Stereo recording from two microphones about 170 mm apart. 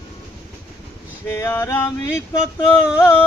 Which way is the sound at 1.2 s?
15° left (ahead or behind).